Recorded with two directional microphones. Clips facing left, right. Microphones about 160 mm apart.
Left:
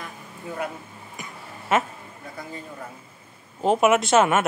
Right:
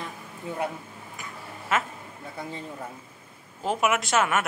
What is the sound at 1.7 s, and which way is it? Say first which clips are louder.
Speech: left 5 dB; 20° left (ahead or behind).